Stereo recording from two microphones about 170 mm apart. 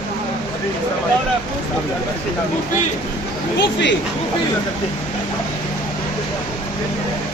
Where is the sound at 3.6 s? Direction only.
90° left.